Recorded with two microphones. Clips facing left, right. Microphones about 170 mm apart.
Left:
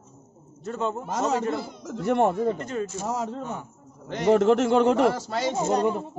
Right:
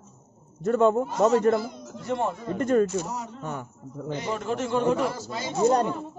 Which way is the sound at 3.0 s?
90° left.